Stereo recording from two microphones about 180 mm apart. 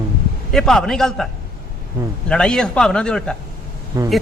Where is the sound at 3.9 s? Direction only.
20° right (ahead or behind).